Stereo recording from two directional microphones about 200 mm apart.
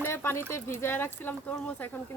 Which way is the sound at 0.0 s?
10° left (ahead or behind).